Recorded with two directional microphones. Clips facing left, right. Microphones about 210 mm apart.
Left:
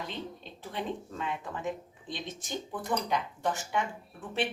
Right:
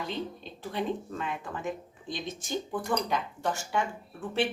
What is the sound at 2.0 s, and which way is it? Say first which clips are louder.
A woman's voice: right 3 dB; 20° left (ahead or behind).